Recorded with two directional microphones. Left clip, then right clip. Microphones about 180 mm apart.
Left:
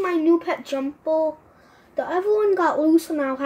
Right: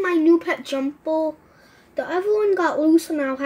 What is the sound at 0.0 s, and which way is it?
A child's voice, 25° right (ahead or behind).